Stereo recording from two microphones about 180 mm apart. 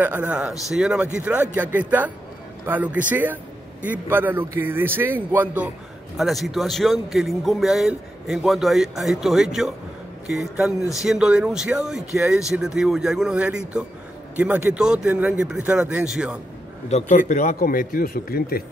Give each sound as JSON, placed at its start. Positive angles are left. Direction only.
{"t": 0.0, "sound": "a man's voice", "side_deg": -10}
{"t": 16.9, "sound": "a man's voice", "side_deg": 40}